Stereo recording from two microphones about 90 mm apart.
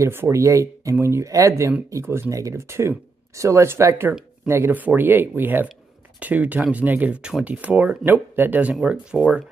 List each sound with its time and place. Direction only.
0.0 s speech: 30° right (ahead or behind); by 9.4 s 15° right (ahead or behind)